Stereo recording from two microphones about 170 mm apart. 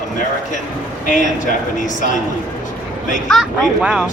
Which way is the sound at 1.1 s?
50° left (ahead or behind).